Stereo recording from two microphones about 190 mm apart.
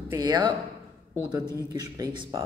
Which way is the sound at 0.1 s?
20° right (ahead or behind).